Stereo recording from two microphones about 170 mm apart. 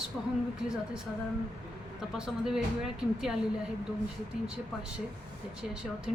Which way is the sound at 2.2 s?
5° right (ahead or behind).